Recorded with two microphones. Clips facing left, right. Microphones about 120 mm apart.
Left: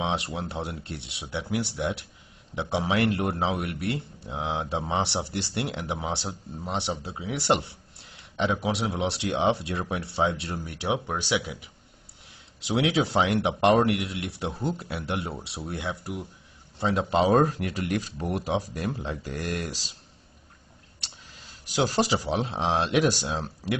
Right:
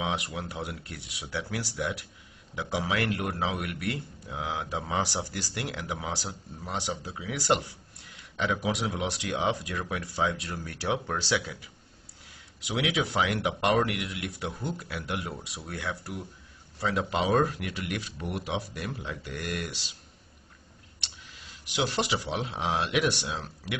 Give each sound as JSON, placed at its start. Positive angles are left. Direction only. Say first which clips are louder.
{"t": 0.0, "sound": "speech", "louder": "left 3 dB", "side_deg": 30}
{"t": 12.5, "sound": "speech", "louder": "left 5 dB", "side_deg": 30}
{"t": 21.6, "sound": "speech", "louder": "left 4 dB", "side_deg": 35}